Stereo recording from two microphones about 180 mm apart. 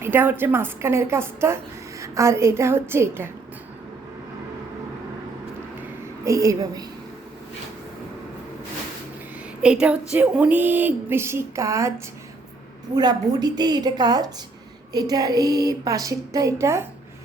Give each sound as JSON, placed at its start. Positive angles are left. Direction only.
{"t": 0.0, "sound": "a woman's voice", "side_deg": -10}
{"t": 6.2, "sound": "speech", "side_deg": -15}
{"t": 9.6, "sound": "a woman's voice", "side_deg": -5}